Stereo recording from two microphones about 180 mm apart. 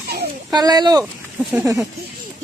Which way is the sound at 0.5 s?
20° right (ahead or behind).